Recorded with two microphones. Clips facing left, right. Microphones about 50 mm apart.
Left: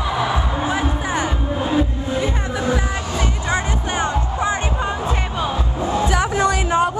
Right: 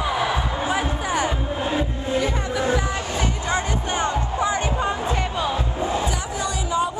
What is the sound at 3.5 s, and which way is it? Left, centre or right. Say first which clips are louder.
Music: left 2 dB; left.